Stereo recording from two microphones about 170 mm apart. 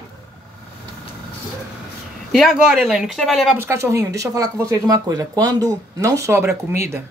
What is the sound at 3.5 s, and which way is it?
Speech, 15° right (ahead or behind).